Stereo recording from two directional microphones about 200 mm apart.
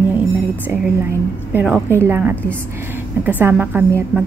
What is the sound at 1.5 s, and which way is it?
A woman's voice, 10° right (ahead or behind).